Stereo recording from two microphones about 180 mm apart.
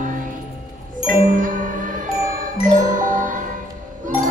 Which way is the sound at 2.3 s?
45° right (ahead or behind).